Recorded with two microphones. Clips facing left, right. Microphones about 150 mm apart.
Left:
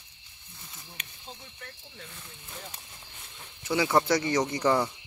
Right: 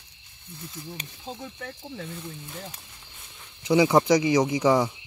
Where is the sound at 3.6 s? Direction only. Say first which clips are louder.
Right 6 dB; 15° right (ahead or behind).